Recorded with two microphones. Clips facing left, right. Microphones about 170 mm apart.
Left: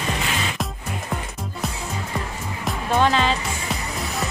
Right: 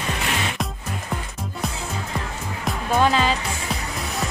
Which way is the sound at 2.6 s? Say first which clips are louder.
Even; 5° right (ahead or behind).